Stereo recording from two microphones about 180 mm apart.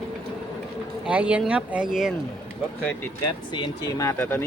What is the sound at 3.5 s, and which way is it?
Speech, 25° left (ahead or behind).